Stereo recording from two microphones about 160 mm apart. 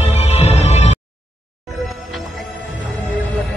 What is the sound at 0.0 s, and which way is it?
Music, 40° left (ahead or behind).